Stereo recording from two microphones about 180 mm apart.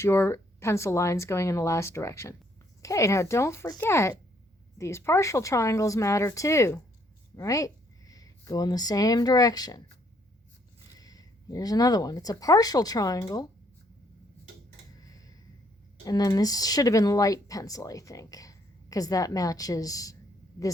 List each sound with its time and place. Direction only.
0.0 s speech: 15° left (ahead or behind)
10.9 s speech: 20° left (ahead or behind)
16.0 s speech: 20° left (ahead or behind)